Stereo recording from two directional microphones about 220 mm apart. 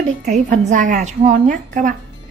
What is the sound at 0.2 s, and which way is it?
A woman's voice, 35° right (ahead or behind).